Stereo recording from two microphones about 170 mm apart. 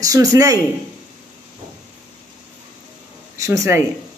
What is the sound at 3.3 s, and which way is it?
Speech, 20° right (ahead or behind).